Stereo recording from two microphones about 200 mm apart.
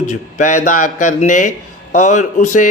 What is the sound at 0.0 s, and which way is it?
Speech, 40° left (ahead or behind).